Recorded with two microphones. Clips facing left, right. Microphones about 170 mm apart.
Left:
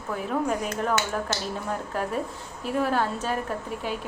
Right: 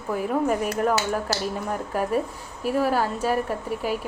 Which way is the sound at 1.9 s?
10° right (ahead or behind).